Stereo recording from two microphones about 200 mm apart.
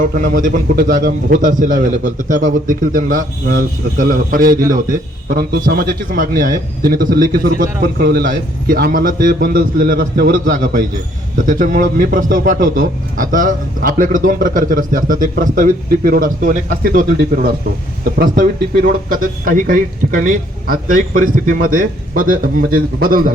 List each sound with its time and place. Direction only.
0.0 s a man's voice: 45° right (ahead or behind)